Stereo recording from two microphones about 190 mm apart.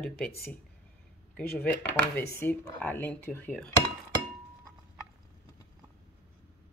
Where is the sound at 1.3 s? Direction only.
10° left (ahead or behind).